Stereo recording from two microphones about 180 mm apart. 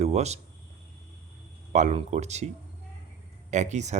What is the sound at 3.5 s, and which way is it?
Speech, 40° right (ahead or behind).